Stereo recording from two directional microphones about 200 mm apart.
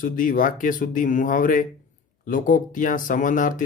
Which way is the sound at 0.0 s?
40° left (ahead or behind).